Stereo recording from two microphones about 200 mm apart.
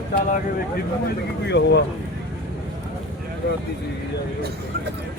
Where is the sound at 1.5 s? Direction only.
60° left (ahead or behind).